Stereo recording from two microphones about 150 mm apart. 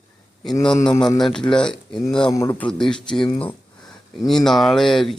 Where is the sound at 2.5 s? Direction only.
5° left (ahead or behind).